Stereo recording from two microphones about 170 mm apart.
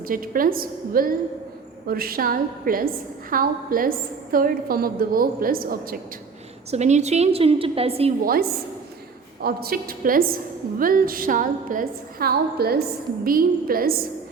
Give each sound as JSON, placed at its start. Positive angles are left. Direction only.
{"t": 0.1, "sound": "a woman's voice", "side_deg": -55}
{"t": 6.7, "sound": "a woman's voice", "side_deg": -40}
{"t": 8.2, "sound": "a woman's voice", "side_deg": -60}